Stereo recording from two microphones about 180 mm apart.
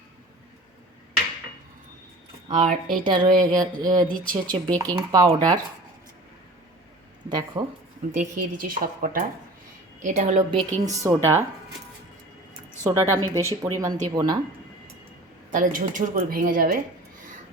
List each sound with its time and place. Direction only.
2.5 s a woman's voice: 40° right (ahead or behind)
3.0 s speech: 25° right (ahead or behind)
7.3 s speech: 25° right (ahead or behind)
8.1 s a woman's voice: 45° right (ahead or behind)
10.6 s speech: 20° right (ahead or behind)
12.8 s speech: 15° right (ahead or behind)
15.5 s speech: 50° right (ahead or behind)